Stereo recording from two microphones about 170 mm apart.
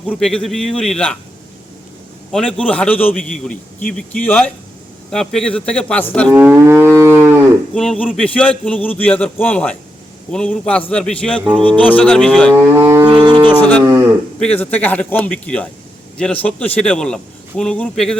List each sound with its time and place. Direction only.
0.0 s a man's voice: 5° left (ahead or behind)
2.3 s a man's voice: 5° left (ahead or behind)
6.3 s livestock: 15° right (ahead or behind)
7.7 s a man's voice: 5° left (ahead or behind)
12.5 s livestock: 15° right (ahead or behind)
13.5 s a man's voice: 10° left (ahead or behind)
13.8 s livestock: 15° right (ahead or behind)
14.3 s a man's voice: 5° left (ahead or behind)